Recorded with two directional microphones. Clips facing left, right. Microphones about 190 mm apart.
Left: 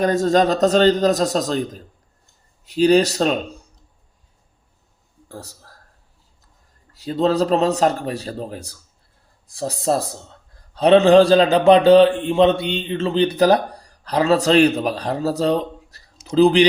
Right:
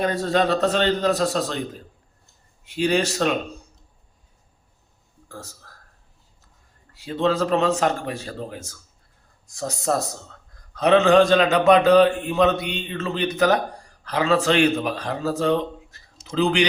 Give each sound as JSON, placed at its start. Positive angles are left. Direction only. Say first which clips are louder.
{"t": 0.0, "sound": "a man's voice", "louder": "left 5 dB", "side_deg": 45}
{"t": 2.6, "sound": "a man's voice", "louder": "left 7 dB", "side_deg": 35}
{"t": 5.3, "sound": "a man's voice", "louder": "left 3 dB", "side_deg": 35}
{"t": 6.9, "sound": "a man's voice", "louder": "left 4 dB", "side_deg": 40}